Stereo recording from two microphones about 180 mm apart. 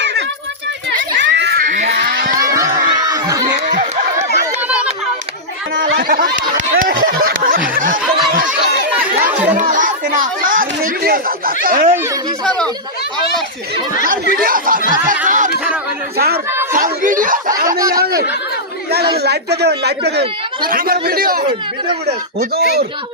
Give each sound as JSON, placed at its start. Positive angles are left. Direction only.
{"t": 0.0, "sound": "a sound", "side_deg": -75}
{"t": 2.0, "sound": "a sound", "side_deg": -60}
{"t": 2.5, "sound": "crowd", "side_deg": -20}
{"t": 6.0, "sound": "a sound", "side_deg": -50}
{"t": 7.8, "sound": "snicker", "side_deg": -50}
{"t": 9.0, "sound": "chatter", "side_deg": -10}
{"t": 9.6, "sound": "chatter", "side_deg": -45}
{"t": 14.4, "sound": "speech", "side_deg": -50}
{"t": 16.1, "sound": "speech", "side_deg": -60}
{"t": 16.7, "sound": "speech", "side_deg": -50}
{"t": 17.7, "sound": "speech", "side_deg": -20}
{"t": 17.9, "sound": "speech", "side_deg": -60}